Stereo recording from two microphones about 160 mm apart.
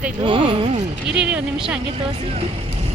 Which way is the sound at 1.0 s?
5° right (ahead or behind).